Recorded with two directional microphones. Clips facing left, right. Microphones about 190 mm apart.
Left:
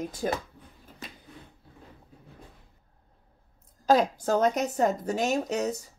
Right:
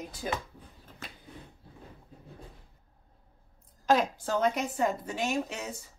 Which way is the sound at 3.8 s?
40° left (ahead or behind).